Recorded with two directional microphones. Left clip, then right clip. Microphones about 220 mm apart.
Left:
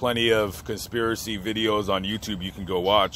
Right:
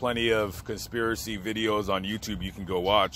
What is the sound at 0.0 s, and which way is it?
Speech, 5° right (ahead or behind).